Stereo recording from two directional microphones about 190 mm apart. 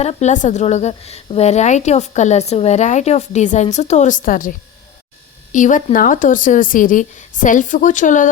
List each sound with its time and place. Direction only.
0.0 s a woman's voice: 35° left (ahead or behind)